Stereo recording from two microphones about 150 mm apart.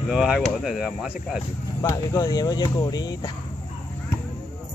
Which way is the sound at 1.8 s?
20° left (ahead or behind).